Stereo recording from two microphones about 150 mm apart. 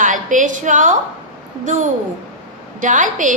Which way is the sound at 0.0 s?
60° right (ahead or behind).